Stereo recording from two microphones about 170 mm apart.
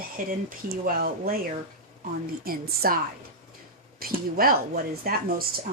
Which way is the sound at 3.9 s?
60° right (ahead or behind).